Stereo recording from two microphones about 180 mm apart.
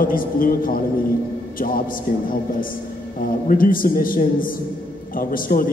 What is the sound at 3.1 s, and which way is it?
A man's voice, 50° left (ahead or behind).